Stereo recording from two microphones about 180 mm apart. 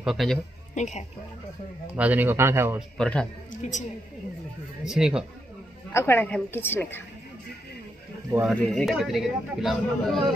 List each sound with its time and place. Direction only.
0.0 s a man's voice: centre (ahead or behind)
0.7 s speech: 40° left (ahead or behind)
2.0 s a man's voice: 10° right (ahead or behind)
3.0 s a man's voice: 5° left (ahead or behind)
4.8 s a man's voice: 5° right (ahead or behind)
5.9 s a woman's voice: 10° left (ahead or behind)
8.5 s a man's voice: centre (ahead or behind)